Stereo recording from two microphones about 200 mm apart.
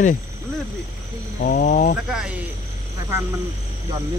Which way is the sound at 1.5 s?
40° left (ahead or behind).